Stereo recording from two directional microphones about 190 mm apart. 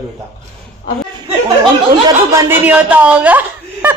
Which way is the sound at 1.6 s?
20° right (ahead or behind).